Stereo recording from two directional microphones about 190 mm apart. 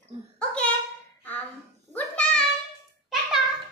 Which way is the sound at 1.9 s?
5° left (ahead or behind).